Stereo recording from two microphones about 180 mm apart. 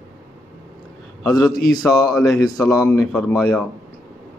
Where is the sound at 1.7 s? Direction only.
20° left (ahead or behind).